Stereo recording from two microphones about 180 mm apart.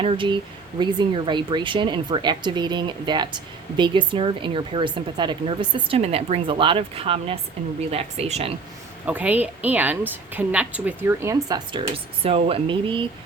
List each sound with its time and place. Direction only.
0.0 s speech: 30° right (ahead or behind)
9.0 s a woman's voice: 10° right (ahead or behind); by 13.1 s 30° right (ahead or behind)